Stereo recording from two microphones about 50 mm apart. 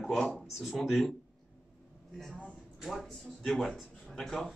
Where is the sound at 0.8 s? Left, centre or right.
Centre.